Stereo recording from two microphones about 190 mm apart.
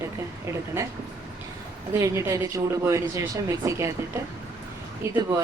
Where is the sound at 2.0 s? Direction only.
15° right (ahead or behind).